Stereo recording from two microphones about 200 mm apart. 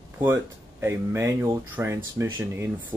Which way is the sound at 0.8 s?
10° right (ahead or behind).